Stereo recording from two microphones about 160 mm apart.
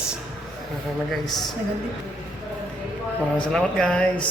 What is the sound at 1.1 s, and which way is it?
Speech, centre (ahead or behind).